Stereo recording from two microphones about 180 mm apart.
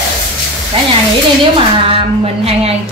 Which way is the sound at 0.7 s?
30° right (ahead or behind).